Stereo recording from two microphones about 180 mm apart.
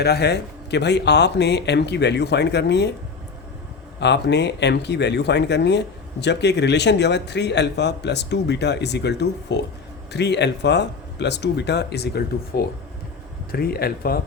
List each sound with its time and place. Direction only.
0.0 s speech: 65° left (ahead or behind)
4.0 s speech: 70° left (ahead or behind)